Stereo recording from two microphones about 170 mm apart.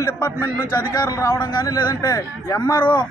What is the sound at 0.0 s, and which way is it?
A man's voice, 15° left (ahead or behind).